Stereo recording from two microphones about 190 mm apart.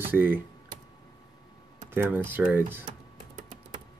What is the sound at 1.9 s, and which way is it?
Speech, 10° right (ahead or behind).